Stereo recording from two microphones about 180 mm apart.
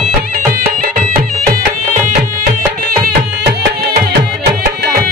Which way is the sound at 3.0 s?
60° right (ahead or behind).